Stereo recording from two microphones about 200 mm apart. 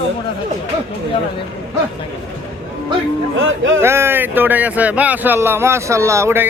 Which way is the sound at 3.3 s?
75° right (ahead or behind).